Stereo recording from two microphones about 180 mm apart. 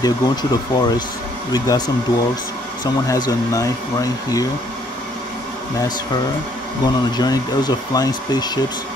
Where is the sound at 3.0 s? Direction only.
20° left (ahead or behind).